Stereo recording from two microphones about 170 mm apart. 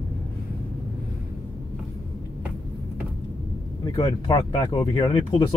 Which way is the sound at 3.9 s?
20° left (ahead or behind).